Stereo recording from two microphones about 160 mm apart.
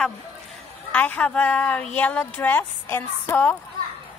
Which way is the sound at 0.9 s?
10° left (ahead or behind).